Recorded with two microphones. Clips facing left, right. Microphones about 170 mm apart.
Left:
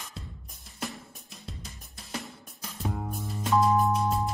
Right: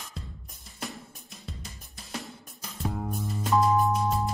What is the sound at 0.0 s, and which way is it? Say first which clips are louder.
Drum kit: right 1 dB; centre (ahead or behind).